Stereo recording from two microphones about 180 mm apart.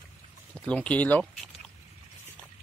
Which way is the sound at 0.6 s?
5° left (ahead or behind).